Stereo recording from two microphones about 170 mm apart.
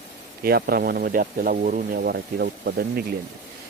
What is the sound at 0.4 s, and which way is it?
A man's voice, 60° right (ahead or behind).